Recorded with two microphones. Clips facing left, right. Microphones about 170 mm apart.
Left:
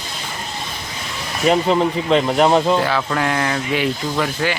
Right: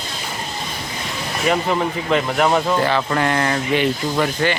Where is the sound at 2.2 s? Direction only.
20° left (ahead or behind).